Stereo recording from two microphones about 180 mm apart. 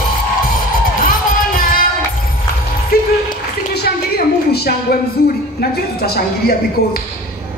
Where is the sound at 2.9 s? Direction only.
60° left (ahead or behind).